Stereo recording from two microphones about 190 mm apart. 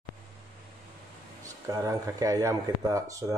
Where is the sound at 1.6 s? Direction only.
15° right (ahead or behind).